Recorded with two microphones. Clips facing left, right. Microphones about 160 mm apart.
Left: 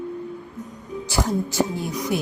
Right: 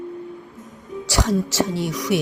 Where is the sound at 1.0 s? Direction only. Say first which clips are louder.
Right 2 dB; 80° right.